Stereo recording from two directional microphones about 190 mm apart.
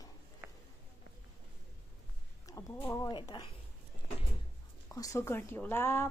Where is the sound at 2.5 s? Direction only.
15° left (ahead or behind).